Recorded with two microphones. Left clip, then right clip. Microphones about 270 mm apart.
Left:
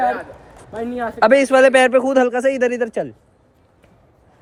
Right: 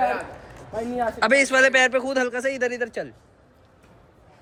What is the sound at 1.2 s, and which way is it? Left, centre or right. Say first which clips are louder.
A man's voice: left 6 dB; centre.